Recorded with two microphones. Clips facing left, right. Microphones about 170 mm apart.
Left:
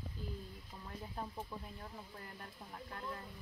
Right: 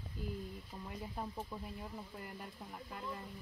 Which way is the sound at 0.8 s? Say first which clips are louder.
Right 1 dB; 10° right (ahead or behind).